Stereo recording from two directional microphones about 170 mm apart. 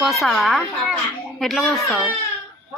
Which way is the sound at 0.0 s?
Centre (ahead or behind).